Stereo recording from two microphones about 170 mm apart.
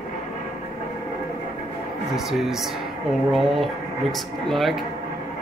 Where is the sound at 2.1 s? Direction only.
Centre (ahead or behind).